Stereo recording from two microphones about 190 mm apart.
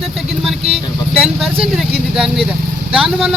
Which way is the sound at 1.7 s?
Centre (ahead or behind).